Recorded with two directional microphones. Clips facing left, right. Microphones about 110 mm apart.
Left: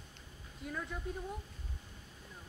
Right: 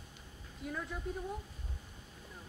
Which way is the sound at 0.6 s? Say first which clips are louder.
Right 1 dB; centre (ahead or behind).